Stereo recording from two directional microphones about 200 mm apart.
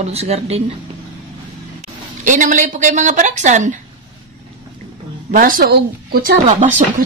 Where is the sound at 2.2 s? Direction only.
40° right (ahead or behind).